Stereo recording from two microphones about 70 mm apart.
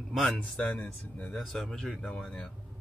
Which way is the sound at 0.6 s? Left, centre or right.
Centre.